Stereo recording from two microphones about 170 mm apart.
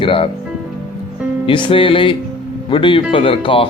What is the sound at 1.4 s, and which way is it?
Speech, 30° left (ahead or behind).